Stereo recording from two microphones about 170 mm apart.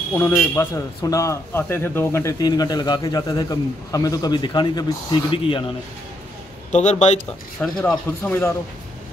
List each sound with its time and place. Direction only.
0.1 s a man's voice: 15° left (ahead or behind)
6.7 s speech: 45° left (ahead or behind)
7.6 s speech: 5° left (ahead or behind)